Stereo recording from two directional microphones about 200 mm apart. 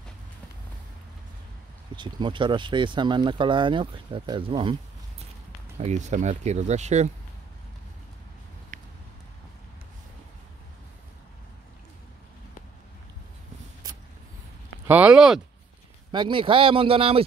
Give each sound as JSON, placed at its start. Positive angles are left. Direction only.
{"t": 2.0, "sound": "speech", "side_deg": -25}
{"t": 5.8, "sound": "speech", "side_deg": -35}
{"t": 14.9, "sound": "speech", "side_deg": -5}
{"t": 16.1, "sound": "speech", "side_deg": -25}